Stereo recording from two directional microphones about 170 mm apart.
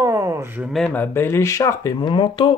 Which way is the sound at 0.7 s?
5° left (ahead or behind).